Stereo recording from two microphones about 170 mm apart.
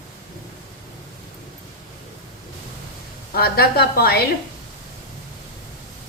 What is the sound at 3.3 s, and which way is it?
Speech, 65° left (ahead or behind).